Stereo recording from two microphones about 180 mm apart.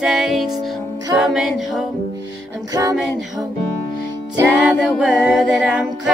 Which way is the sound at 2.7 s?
20° right (ahead or behind).